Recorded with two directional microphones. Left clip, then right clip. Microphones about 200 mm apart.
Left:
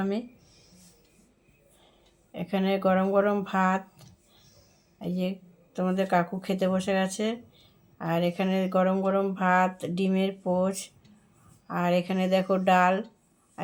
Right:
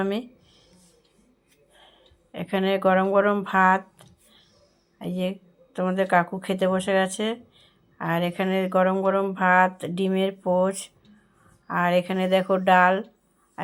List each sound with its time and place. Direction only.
0.0 s speech: 15° right (ahead or behind)
2.3 s speech: 10° right (ahead or behind)